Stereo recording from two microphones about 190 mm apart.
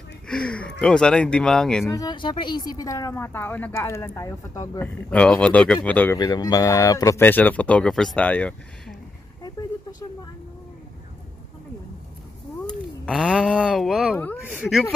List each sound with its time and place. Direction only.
0.3 s speech: 5° left (ahead or behind)
1.9 s a woman's voice: 20° left (ahead or behind)
6.1 s a woman's voice: 20° left (ahead or behind)
9.4 s vehicle: 20° left (ahead or behind)
12.6 s speech: centre (ahead or behind)
14.1 s a woman's voice: 10° left (ahead or behind)
14.5 s speech: centre (ahead or behind)